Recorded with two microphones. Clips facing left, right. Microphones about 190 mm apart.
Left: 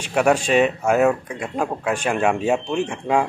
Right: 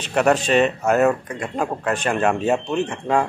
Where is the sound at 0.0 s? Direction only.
10° left (ahead or behind).